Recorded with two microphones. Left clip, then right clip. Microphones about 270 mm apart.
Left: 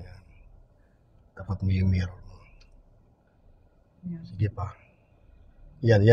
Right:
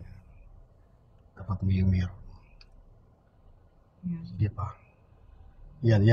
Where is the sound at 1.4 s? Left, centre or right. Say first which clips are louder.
Even; left.